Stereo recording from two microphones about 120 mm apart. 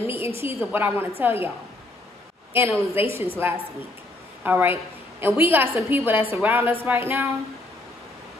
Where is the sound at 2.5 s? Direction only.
20° right (ahead or behind).